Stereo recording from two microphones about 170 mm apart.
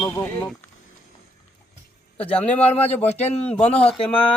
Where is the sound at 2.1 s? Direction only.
10° left (ahead or behind).